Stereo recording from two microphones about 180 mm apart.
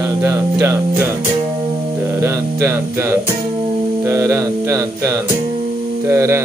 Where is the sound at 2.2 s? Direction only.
15° right (ahead or behind).